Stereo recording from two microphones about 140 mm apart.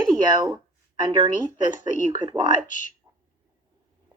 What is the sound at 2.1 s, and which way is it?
Speech, 35° right (ahead or behind).